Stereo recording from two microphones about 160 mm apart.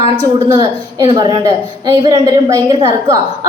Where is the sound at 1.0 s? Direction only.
25° right (ahead or behind).